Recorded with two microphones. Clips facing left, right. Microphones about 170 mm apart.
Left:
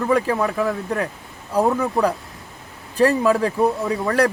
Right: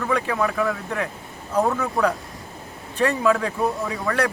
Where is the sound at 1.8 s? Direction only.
30° left (ahead or behind).